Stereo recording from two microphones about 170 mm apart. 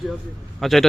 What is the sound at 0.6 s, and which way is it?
Speech, centre (ahead or behind).